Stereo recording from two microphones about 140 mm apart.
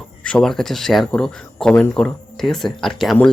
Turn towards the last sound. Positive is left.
turn(degrees=0)  # may be behind; listen again after turning